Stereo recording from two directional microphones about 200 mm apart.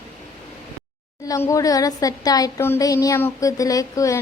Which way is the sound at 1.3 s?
15° left (ahead or behind).